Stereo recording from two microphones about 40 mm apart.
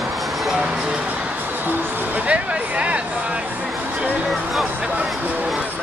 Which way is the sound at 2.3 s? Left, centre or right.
Right.